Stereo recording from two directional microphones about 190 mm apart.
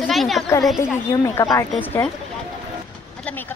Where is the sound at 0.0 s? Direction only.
Centre (ahead or behind).